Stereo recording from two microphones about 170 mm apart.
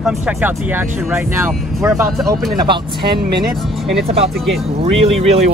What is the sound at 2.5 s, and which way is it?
Speech, 30° right (ahead or behind).